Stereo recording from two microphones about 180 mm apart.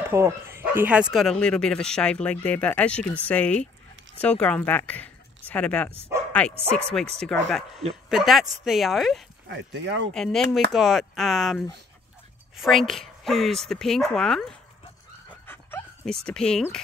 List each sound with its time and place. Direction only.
0.1 s speech: 15° right (ahead or behind)
1.1 s speech: centre (ahead or behind)
9.5 s speech: 90° right
10.1 s speech: centre (ahead or behind)
15.2 s dog: 10° left (ahead or behind)